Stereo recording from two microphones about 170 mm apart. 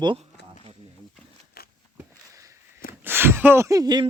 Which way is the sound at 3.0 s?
10° right (ahead or behind).